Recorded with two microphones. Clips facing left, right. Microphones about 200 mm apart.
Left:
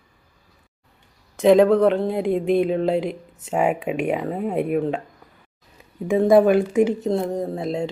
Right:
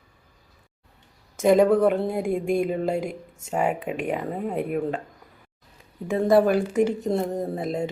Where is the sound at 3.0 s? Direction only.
45° right (ahead or behind).